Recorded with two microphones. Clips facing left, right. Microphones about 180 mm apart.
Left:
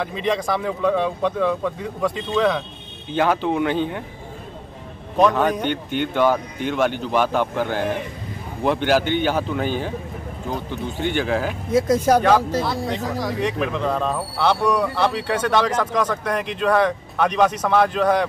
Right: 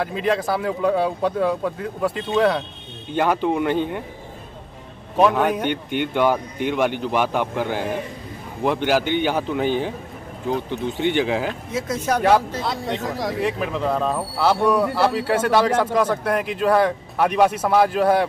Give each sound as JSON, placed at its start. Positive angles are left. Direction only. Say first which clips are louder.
{"t": 0.1, "sound": "speech", "louder": "right 1 dB", "side_deg": -5}
{"t": 5.1, "sound": "speech", "louder": "even", "side_deg": -5}
{"t": 11.7, "sound": "speech", "louder": "left 8 dB", "side_deg": 35}
{"t": 12.9, "sound": "speech", "louder": "even", "side_deg": -5}